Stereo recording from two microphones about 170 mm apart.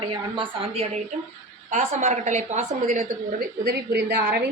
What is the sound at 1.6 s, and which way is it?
A woman's voice, 45° right (ahead or behind).